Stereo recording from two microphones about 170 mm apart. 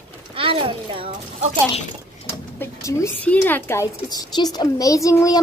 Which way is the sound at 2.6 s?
20° left (ahead or behind).